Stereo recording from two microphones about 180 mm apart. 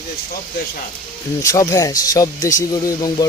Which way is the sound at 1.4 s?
15° left (ahead or behind).